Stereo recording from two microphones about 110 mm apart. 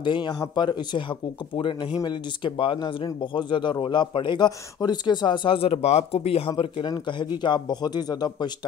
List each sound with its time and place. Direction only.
0.0 s speech: 45° left (ahead or behind)
4.5 s speech: 35° left (ahead or behind); by 6.5 s 65° left (ahead or behind)
6.6 s speech: 45° left (ahead or behind)